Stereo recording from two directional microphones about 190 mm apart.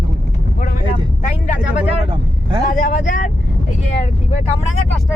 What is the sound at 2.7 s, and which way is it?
Speech, 45° left (ahead or behind).